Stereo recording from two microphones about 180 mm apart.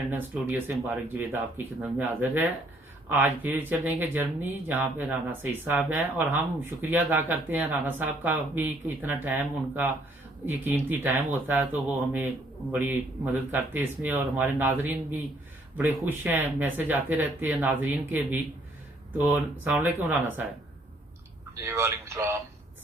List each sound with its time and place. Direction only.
0.1 s speech: 10° right (ahead or behind)
21.5 s speech: 15° right (ahead or behind)